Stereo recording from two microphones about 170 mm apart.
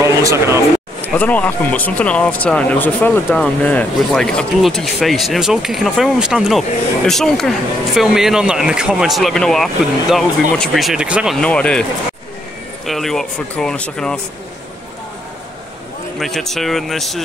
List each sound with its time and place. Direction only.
0.0 s a sound: 15° right (ahead or behind)
1.0 s speech: 10° left (ahead or behind)
12.8 s speech: centre (ahead or behind)
16.2 s speech: centre (ahead or behind)